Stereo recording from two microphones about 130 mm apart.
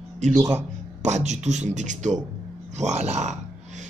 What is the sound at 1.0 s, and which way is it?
Speech, 60° right (ahead or behind).